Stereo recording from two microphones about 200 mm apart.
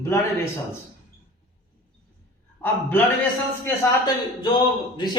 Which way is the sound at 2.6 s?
10° left (ahead or behind).